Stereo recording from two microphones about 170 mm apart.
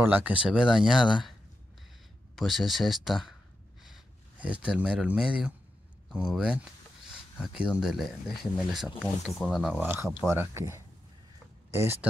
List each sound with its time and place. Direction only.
0.0 s speech: 10° right (ahead or behind)
2.3 s speech: centre (ahead or behind)
9.8 s speech: 15° right (ahead or behind)